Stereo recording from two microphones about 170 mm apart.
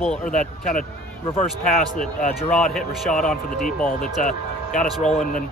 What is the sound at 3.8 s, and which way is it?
Speech, 50° left (ahead or behind).